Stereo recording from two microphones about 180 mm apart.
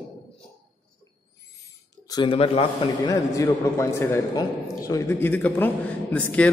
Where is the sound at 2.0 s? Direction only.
25° left (ahead or behind).